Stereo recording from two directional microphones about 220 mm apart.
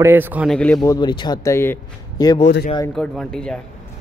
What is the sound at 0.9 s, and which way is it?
A man's voice, 20° left (ahead or behind).